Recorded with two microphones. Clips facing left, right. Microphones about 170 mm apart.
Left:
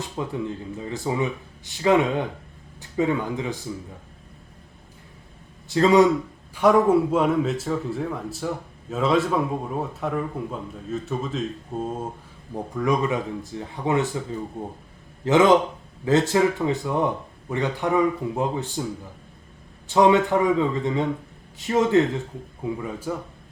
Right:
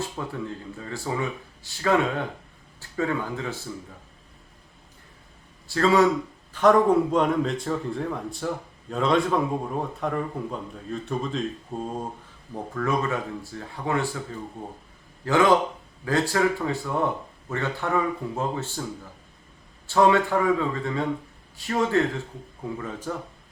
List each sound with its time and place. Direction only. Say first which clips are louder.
0.0 s speech: left 3 dB; 15° left (ahead or behind)
5.6 s a man's voice: left 3 dB; 20° left (ahead or behind); by 12.0 s 5° left (ahead or behind)
12.7 s speech: left 3 dB; 15° left (ahead or behind)
15.2 s speech: left 3 dB; 20° left (ahead or behind)
19.9 s speech: left 2 dB; 20° left (ahead or behind)